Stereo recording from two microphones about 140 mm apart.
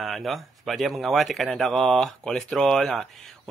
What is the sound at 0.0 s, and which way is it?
A man's voice, centre (ahead or behind).